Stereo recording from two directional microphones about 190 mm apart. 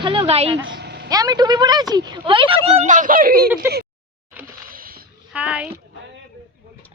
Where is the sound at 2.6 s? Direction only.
35° right (ahead or behind).